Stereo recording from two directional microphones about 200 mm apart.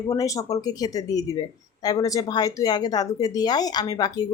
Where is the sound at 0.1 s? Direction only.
15° left (ahead or behind).